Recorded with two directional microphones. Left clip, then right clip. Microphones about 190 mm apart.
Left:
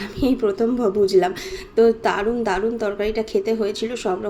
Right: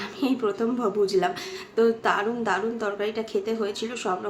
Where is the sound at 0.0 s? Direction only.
15° left (ahead or behind).